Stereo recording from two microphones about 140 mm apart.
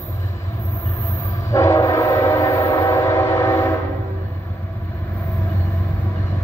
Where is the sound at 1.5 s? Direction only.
20° left (ahead or behind).